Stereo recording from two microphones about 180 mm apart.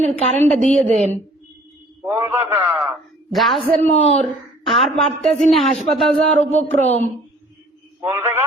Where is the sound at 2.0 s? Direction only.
15° right (ahead or behind).